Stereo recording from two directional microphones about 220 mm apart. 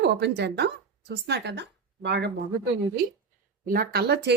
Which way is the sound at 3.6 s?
40° right (ahead or behind).